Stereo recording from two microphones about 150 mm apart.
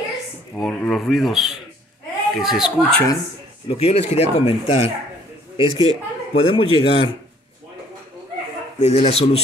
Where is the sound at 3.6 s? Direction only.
45° left (ahead or behind).